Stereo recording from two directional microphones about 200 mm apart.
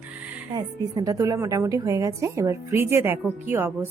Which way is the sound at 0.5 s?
20° right (ahead or behind).